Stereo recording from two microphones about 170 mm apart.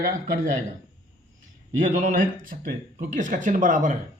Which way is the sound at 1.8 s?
50° right (ahead or behind).